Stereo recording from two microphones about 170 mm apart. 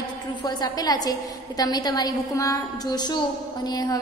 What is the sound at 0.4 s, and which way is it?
A woman's voice, 25° left (ahead or behind).